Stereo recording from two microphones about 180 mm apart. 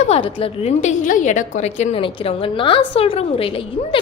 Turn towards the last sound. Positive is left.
turn(degrees=30)  # may be behind; listen again after turning